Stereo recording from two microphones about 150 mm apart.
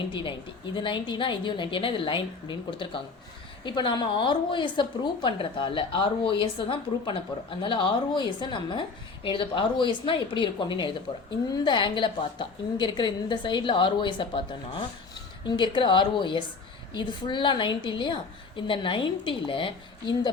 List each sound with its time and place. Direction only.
0.1 s a woman's voice: 30° left (ahead or behind)
15.4 s a woman's voice: 30° left (ahead or behind)